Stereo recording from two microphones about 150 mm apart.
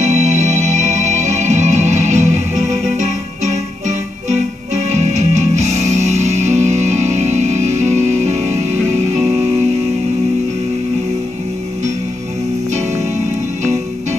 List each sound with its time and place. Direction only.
0.0 s music: 55° right (ahead or behind)
4.9 s music: 50° right (ahead or behind)